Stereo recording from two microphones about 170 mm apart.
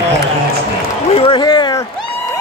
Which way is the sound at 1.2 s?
25° left (ahead or behind).